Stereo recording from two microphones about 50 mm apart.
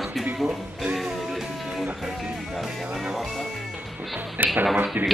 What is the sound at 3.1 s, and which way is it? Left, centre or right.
Music, centre.